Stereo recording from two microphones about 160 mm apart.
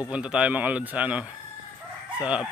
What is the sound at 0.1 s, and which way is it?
A man's voice, 5° right (ahead or behind).